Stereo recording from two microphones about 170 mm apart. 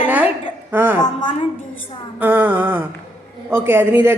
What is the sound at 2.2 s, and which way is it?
A man's voice, 10° right (ahead or behind).